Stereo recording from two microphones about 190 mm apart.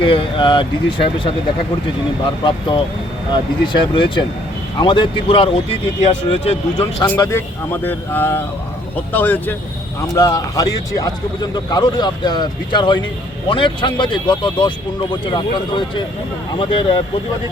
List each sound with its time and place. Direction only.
0.0 s speech: 25° left (ahead or behind)
2.4 s speech: 25° left (ahead or behind)
7.2 s speech: 15° left (ahead or behind)